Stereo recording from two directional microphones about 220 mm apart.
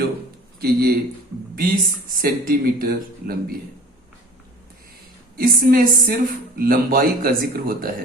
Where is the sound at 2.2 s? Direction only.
40° right (ahead or behind).